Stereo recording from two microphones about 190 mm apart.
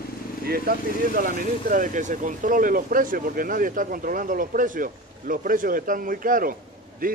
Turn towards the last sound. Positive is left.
turn(degrees=-45)  # may be behind; listen again after turning